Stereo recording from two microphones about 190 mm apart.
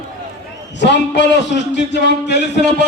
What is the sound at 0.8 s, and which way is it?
A man's voice, 65° left (ahead or behind).